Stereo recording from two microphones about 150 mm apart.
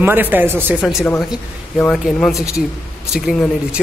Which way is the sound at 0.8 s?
5° right (ahead or behind).